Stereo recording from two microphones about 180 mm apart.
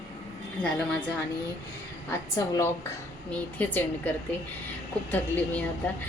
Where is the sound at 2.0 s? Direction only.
15° left (ahead or behind).